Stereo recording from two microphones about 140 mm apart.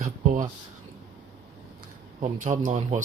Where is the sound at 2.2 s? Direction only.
65° right (ahead or behind).